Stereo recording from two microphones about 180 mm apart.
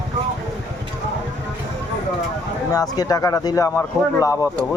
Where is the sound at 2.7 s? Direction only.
20° left (ahead or behind).